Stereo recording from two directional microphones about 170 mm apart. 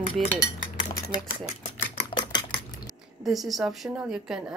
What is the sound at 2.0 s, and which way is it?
Typewriter, 30° left (ahead or behind).